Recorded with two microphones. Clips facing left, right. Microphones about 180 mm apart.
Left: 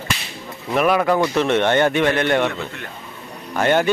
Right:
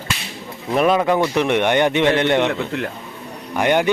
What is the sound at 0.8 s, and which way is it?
A man's voice, 20° right (ahead or behind).